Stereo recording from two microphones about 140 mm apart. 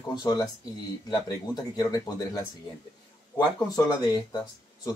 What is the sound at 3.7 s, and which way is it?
Speech, 30° left (ahead or behind).